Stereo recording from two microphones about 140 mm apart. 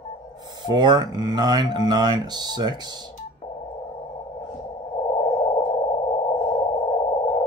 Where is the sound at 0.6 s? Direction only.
30° right (ahead or behind).